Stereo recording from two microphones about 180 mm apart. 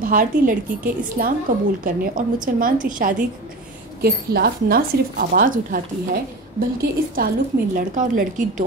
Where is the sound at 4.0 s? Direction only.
60° right (ahead or behind).